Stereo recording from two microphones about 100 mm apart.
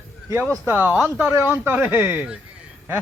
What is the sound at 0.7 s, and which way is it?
Speech, 20° right (ahead or behind).